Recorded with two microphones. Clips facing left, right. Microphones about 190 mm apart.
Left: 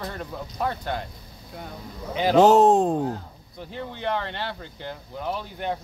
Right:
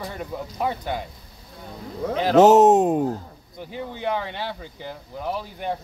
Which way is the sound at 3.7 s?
5° right (ahead or behind).